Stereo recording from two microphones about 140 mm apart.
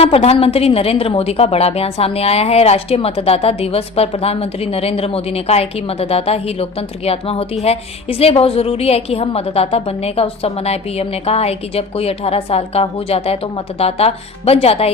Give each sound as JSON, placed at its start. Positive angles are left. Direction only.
{"t": 0.0, "sound": "a woman's voice", "side_deg": 45}